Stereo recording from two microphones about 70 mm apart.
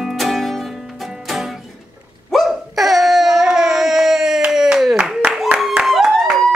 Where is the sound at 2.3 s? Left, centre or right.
Centre.